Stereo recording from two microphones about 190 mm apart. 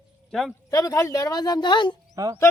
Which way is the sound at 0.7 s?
15° left (ahead or behind).